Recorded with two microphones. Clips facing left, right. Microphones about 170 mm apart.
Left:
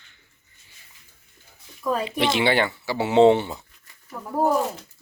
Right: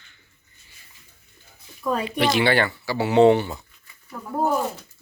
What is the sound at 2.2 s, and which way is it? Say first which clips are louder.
Speech: right 1 dB; 20° left (ahead or behind).